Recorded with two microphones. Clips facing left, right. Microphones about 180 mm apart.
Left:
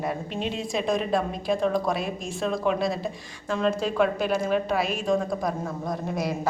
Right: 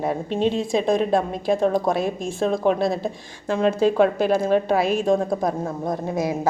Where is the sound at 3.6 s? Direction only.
50° right (ahead or behind).